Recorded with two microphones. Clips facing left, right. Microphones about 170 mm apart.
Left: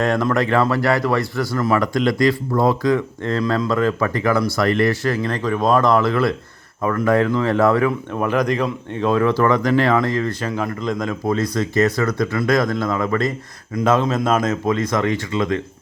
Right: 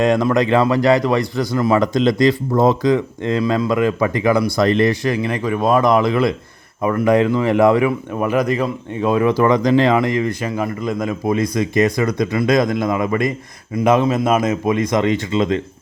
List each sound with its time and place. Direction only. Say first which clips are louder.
0.0 s a man's voice: right 3 dB; 15° right (ahead or behind)